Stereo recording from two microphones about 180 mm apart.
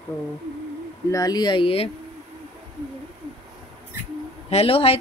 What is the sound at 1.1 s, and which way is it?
Speech, 20° left (ahead or behind).